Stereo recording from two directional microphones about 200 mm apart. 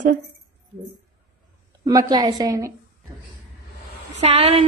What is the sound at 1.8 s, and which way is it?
Speech, 20° right (ahead or behind).